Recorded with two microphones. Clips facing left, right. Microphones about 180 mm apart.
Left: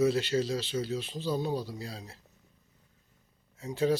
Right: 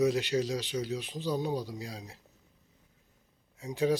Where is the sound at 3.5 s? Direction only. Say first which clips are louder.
Left 1 dB; 15° right (ahead or behind).